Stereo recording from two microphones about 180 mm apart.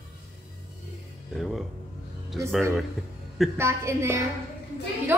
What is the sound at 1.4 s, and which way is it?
Speech, centre (ahead or behind).